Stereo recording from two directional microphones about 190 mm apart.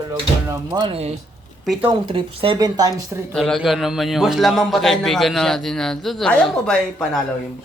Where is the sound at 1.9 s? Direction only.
25° right (ahead or behind).